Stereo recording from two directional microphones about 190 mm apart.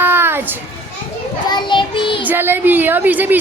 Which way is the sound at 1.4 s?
25° left (ahead or behind).